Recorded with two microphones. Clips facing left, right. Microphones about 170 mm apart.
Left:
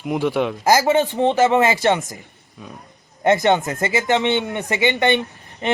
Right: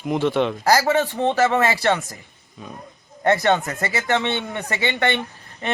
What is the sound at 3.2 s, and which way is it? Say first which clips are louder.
Speech: left 2 dB; 20° left (ahead or behind).